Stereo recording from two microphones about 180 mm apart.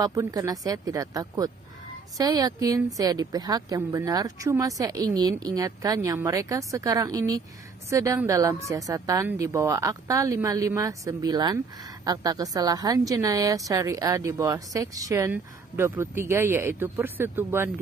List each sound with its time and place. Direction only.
0.0 s a woman's voice: 20° right (ahead or behind)